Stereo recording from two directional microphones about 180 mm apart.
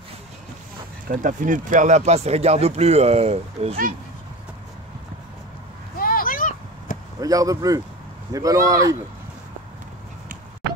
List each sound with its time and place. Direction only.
1.0 s speech: 50° right (ahead or behind)
5.9 s vehicle: 55° left (ahead or behind)
7.2 s speech: 20° right (ahead or behind)